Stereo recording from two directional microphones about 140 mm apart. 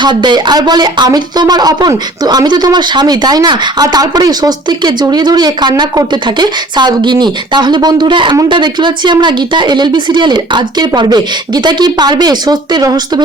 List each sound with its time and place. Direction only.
0.0 s speech: 30° right (ahead or behind)